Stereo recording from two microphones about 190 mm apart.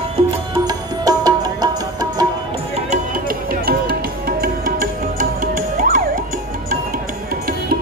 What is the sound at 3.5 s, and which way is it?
Music, 50° right (ahead or behind).